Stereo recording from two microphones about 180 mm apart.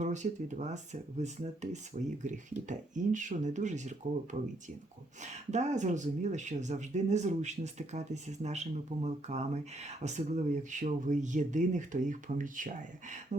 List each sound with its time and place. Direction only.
0.0 s speech: 40° right (ahead or behind)